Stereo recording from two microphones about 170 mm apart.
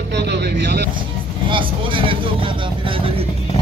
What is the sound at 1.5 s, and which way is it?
Vehicle, 30° right (ahead or behind).